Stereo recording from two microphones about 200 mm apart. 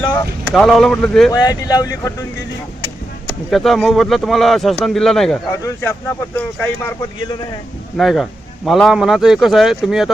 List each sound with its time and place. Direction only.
0.5 s speech: centre (ahead or behind)
1.3 s speech: 15° left (ahead or behind)
3.5 s speech: centre (ahead or behind)
5.5 s speech: 15° left (ahead or behind)
7.9 s speech: centre (ahead or behind)